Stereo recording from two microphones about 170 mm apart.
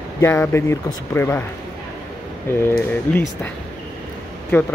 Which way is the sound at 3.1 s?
10° left (ahead or behind).